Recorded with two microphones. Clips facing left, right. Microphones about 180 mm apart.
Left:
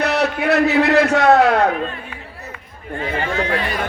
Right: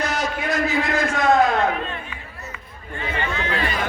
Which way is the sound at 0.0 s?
65° left (ahead or behind).